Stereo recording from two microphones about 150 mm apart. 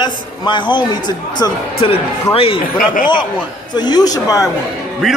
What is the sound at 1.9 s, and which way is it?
Speech, 40° left (ahead or behind).